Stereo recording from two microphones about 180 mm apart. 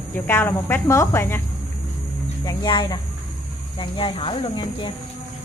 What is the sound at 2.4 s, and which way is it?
Speech, 25° left (ahead or behind).